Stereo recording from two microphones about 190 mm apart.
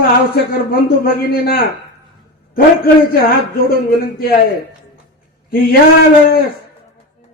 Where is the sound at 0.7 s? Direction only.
50° left (ahead or behind).